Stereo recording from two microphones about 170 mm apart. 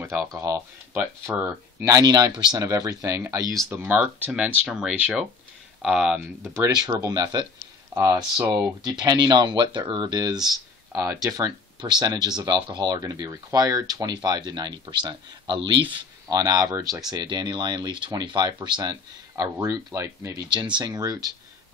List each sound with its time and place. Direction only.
0.0 s speech: 15° right (ahead or behind)